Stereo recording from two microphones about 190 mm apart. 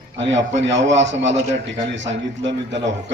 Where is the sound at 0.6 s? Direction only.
70° right (ahead or behind).